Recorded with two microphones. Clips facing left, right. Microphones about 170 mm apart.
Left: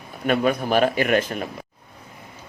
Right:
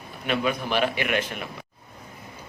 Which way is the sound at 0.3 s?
45° left (ahead or behind).